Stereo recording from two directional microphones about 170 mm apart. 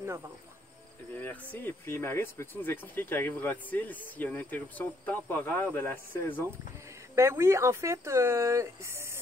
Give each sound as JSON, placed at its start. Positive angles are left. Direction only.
{"t": 1.1, "sound": "speech", "side_deg": 10}
{"t": 7.2, "sound": "speech", "side_deg": -15}